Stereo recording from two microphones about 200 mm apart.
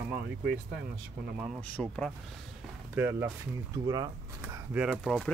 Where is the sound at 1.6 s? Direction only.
5° left (ahead or behind).